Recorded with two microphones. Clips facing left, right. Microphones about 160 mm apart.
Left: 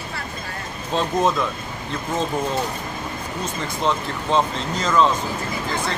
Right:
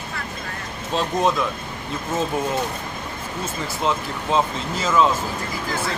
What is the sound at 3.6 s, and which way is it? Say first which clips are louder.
Speech: left 1 dB; 5° right (ahead or behind).